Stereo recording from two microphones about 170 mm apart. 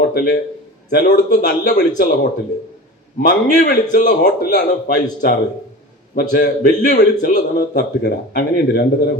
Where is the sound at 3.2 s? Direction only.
60° left (ahead or behind).